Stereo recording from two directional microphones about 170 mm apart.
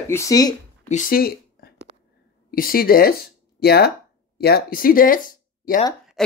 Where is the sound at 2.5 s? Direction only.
60° left (ahead or behind).